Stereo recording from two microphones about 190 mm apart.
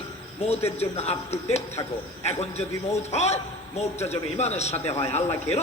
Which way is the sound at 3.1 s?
35° left (ahead or behind).